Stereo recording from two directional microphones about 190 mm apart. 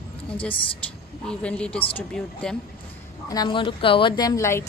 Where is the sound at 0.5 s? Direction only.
30° left (ahead or behind).